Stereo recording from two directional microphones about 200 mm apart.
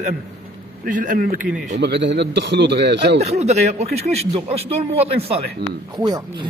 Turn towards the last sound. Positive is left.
turn(degrees=-20)  # may be behind; listen again after turning